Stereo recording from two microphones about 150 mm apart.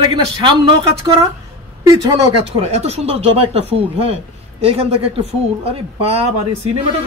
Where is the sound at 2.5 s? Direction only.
45° right (ahead or behind).